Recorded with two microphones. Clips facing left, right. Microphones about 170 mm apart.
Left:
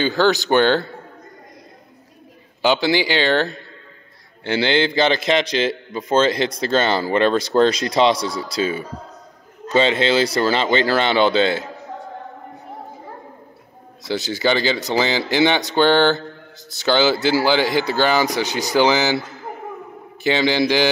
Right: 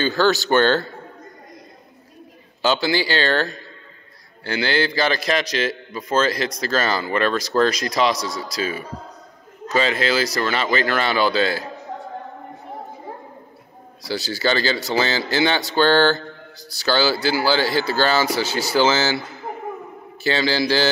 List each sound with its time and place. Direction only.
0.0 s speech: 15° left (ahead or behind)
2.6 s a man's voice: 20° left (ahead or behind)
14.0 s a man's voice: 20° left (ahead or behind)
20.2 s a man's voice: 20° left (ahead or behind)